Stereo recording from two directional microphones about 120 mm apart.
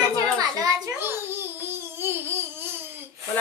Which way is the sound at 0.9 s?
20° right (ahead or behind).